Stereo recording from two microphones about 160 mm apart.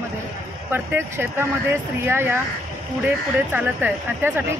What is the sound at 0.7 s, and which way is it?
Speech, 15° right (ahead or behind).